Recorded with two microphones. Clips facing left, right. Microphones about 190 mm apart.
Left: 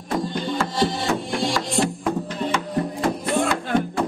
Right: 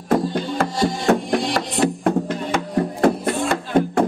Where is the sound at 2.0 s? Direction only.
55° right (ahead or behind).